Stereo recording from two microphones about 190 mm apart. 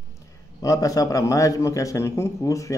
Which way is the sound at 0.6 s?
20° left (ahead or behind).